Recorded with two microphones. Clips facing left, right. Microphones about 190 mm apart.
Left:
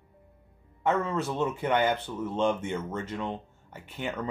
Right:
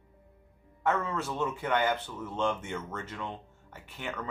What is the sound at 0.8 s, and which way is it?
Speech, 20° left (ahead or behind).